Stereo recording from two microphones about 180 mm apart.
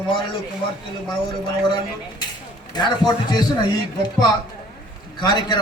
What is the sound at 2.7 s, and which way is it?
Speech, 25° left (ahead or behind).